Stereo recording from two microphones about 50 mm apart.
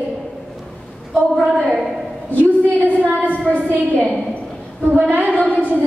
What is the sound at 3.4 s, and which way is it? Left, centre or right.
A woman's voice, right.